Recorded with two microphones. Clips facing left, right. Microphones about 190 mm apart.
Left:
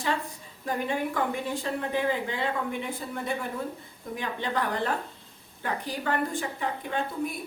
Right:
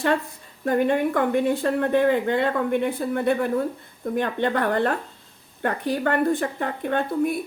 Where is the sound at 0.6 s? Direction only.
60° right (ahead or behind).